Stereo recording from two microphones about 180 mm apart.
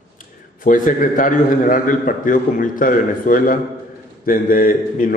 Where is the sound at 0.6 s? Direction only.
45° left (ahead or behind).